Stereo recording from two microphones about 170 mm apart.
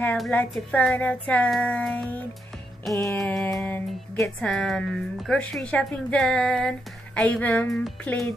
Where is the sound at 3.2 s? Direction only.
Centre (ahead or behind).